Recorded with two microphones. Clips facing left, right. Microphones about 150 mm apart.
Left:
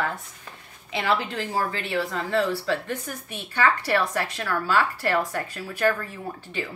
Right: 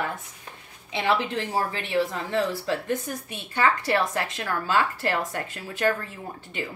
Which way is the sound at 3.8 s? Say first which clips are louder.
Even; 25° right (ahead or behind).